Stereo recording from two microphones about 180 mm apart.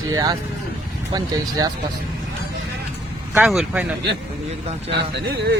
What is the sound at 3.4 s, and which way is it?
Speech, 5° right (ahead or behind).